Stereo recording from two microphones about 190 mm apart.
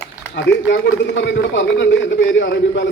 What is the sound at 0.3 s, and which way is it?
A man's voice, 70° left (ahead or behind).